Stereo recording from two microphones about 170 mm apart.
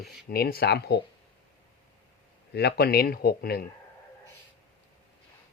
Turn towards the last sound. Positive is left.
turn(degrees=65)  # may be behind; listen again after turning